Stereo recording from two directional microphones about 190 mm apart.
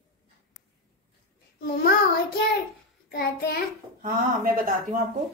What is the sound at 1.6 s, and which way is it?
Speech, 50° left (ahead or behind).